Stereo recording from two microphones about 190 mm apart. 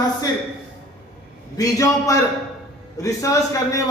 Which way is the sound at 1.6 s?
15° left (ahead or behind).